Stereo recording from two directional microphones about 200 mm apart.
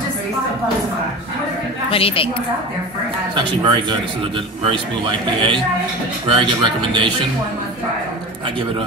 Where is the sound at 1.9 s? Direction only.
25° left (ahead or behind).